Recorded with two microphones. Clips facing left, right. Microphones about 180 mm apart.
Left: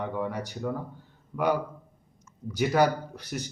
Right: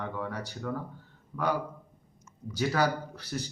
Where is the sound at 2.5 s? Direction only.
15° left (ahead or behind).